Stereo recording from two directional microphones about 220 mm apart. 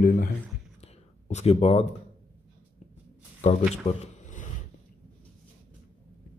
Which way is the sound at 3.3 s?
30° left (ahead or behind).